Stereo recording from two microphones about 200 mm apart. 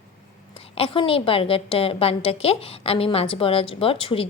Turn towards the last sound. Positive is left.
turn(degrees=25)  # may be behind; listen again after turning